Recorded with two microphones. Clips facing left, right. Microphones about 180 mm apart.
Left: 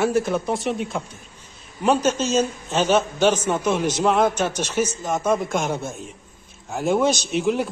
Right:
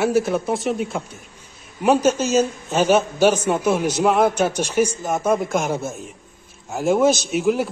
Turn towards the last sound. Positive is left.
turn(degrees=-5)  # may be behind; listen again after turning